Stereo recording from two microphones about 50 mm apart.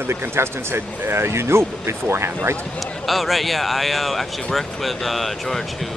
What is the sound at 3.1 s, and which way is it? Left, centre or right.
Speech, centre.